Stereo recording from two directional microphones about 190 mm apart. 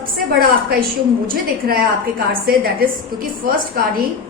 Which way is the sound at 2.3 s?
50° right (ahead or behind).